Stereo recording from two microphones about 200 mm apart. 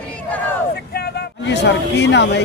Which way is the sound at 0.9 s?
55° left (ahead or behind).